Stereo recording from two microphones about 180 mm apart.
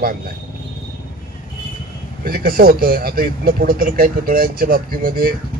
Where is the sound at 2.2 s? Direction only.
55° right (ahead or behind).